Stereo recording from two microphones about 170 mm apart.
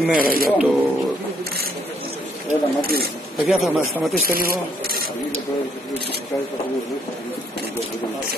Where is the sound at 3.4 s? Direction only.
Centre (ahead or behind).